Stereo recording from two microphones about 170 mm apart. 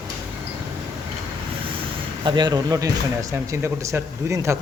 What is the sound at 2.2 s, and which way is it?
Speech, 25° right (ahead or behind).